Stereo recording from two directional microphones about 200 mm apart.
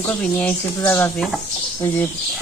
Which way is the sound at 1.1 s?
Centre (ahead or behind).